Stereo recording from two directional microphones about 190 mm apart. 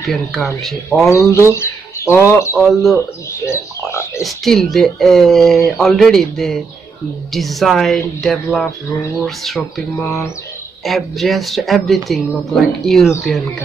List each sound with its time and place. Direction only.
0.0 s speech: centre (ahead or behind)
1.0 s speech: 15° left (ahead or behind)
2.6 s speech: centre (ahead or behind)
3.4 s speech: 15° left (ahead or behind)
4.2 s speech: centre (ahead or behind)
10.8 s speech: centre (ahead or behind)